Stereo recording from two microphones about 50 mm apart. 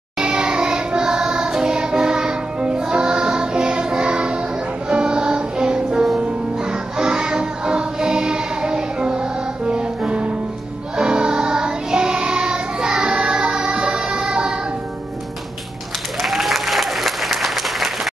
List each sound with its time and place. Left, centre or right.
0.2 s music: centre
16.2 s applause: centre